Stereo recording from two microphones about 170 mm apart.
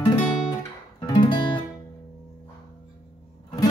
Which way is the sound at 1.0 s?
30° left (ahead or behind).